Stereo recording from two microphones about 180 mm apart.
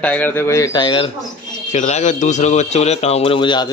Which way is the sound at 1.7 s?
40° left (ahead or behind).